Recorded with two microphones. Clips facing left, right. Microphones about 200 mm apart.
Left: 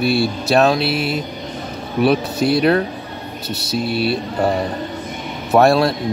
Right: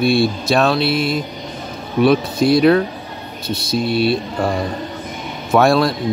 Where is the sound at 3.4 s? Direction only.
70° left (ahead or behind).